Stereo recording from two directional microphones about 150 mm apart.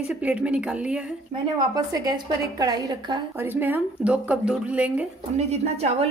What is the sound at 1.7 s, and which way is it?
A woman's voice, 25° right (ahead or behind).